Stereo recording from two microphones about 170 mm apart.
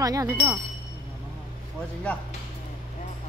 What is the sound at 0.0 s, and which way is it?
Speech, 20° right (ahead or behind).